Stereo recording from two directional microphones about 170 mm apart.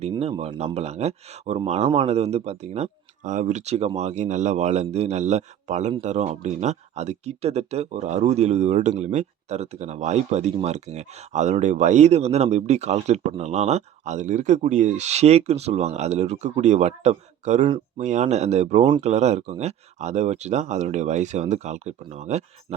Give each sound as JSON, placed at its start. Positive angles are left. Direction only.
{"t": 0.2, "sound": "speech", "side_deg": -35}